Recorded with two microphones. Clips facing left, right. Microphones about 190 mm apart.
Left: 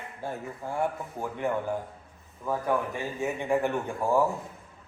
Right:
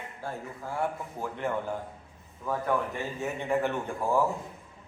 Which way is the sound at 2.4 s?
10° left (ahead or behind).